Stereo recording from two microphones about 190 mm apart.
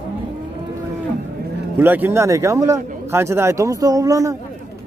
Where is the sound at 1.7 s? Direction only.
10° right (ahead or behind).